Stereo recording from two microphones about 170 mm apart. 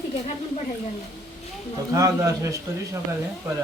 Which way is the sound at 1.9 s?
20° right (ahead or behind).